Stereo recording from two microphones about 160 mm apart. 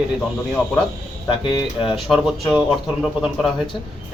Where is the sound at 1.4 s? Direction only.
30° left (ahead or behind).